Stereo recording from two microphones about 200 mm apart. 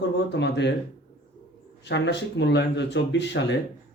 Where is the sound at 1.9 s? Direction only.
60° left (ahead or behind).